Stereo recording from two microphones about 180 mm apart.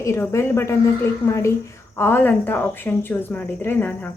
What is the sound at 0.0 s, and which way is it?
A woman's voice, 15° left (ahead or behind).